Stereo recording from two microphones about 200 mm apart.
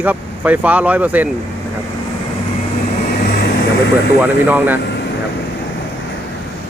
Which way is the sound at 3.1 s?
50° left (ahead or behind).